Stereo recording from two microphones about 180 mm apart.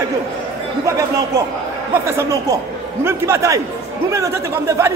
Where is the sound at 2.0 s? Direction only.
15° right (ahead or behind).